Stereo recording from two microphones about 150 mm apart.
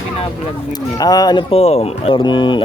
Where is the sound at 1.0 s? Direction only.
25° left (ahead or behind).